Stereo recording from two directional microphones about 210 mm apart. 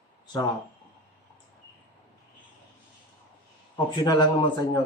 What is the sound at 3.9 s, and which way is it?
Speech, 20° left (ahead or behind).